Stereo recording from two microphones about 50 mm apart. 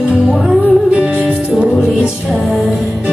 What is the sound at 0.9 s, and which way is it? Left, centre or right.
Music, right.